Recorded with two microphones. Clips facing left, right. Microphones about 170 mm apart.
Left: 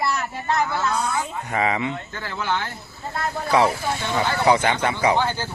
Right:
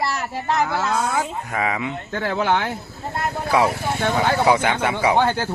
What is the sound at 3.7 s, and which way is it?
Speech, 55° right (ahead or behind).